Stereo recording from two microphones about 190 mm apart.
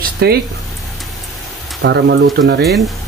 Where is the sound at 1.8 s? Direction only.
65° right (ahead or behind).